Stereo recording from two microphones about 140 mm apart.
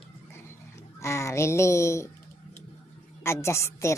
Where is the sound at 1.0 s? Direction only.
20° left (ahead or behind).